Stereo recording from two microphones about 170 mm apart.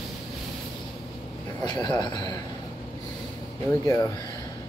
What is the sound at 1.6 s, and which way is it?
Speech, 25° left (ahead or behind).